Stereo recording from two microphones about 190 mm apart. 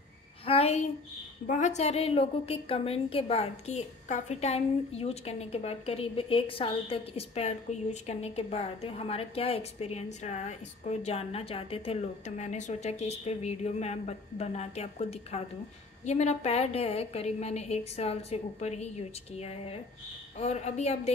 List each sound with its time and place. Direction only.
0.5 s a woman's voice: 35° left (ahead or behind)